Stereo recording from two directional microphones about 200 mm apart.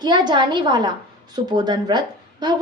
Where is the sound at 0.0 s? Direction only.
20° right (ahead or behind).